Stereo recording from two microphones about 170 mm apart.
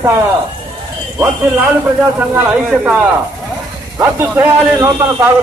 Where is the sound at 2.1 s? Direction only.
10° right (ahead or behind).